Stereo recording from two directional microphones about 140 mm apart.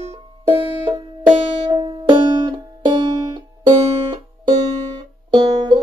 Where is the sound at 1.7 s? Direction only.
35° right (ahead or behind).